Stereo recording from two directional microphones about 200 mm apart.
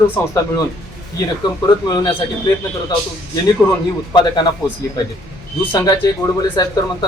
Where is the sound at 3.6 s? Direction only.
10° left (ahead or behind).